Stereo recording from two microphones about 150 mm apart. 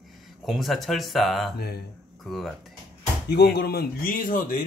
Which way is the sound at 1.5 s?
90° left.